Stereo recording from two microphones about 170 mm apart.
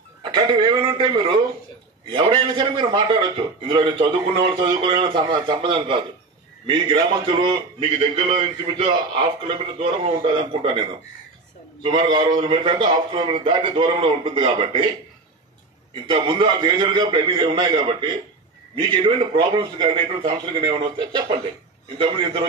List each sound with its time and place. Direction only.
0.3 s a man's voice: 25° right (ahead or behind)
11.8 s a man's voice: 30° right (ahead or behind)
15.9 s a man's voice: 30° right (ahead or behind)